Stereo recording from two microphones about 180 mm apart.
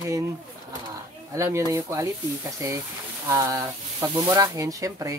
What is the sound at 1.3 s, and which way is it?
Speech, 15° right (ahead or behind).